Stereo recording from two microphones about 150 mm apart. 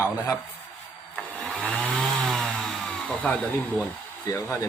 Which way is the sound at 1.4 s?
5° left (ahead or behind).